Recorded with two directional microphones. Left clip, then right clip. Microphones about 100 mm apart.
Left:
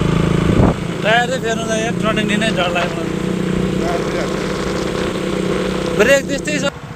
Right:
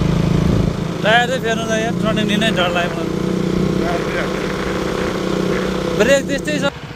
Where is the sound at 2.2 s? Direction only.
50° left (ahead or behind).